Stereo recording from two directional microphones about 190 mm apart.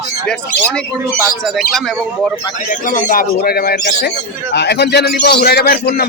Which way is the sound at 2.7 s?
45° left (ahead or behind).